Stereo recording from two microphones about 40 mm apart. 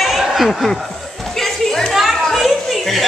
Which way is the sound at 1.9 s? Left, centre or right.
Centre.